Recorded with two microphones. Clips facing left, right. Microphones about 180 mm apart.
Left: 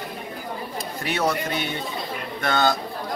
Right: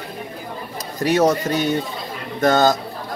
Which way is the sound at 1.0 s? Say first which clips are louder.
Right 8 dB; 40° right (ahead or behind).